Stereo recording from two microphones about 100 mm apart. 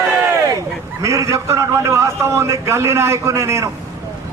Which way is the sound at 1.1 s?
30° right (ahead or behind).